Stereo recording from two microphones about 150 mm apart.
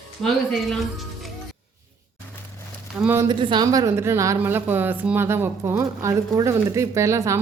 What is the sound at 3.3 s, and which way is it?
A woman's voice, 30° right (ahead or behind).